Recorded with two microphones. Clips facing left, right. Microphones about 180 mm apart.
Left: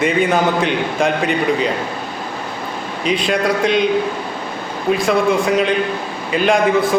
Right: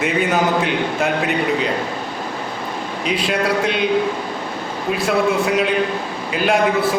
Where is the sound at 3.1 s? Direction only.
5° right (ahead or behind).